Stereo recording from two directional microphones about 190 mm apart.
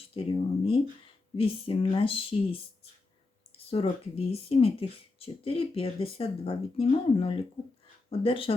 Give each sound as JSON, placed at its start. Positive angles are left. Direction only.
{"t": 0.1, "sound": "speech", "side_deg": 30}
{"t": 3.7, "sound": "speech", "side_deg": 30}